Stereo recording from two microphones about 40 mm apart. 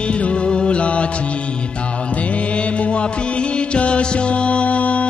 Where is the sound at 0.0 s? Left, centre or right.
Left.